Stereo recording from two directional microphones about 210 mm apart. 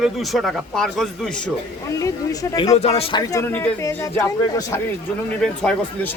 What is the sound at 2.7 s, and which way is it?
Speech, 30° left (ahead or behind).